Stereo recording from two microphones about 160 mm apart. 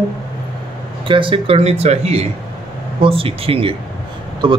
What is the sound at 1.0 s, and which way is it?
A man's voice, 30° right (ahead or behind).